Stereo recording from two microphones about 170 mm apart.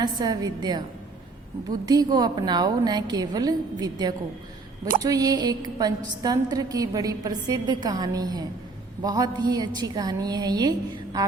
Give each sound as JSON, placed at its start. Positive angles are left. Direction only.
{"t": 0.0, "sound": "a woman's voice", "side_deg": -25}
{"t": 1.9, "sound": "a woman's voice", "side_deg": -25}